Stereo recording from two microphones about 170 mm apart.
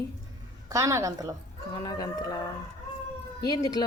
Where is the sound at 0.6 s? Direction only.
15° right (ahead or behind).